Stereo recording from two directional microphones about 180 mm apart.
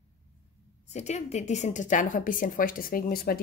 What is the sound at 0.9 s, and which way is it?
Speech, 40° left (ahead or behind).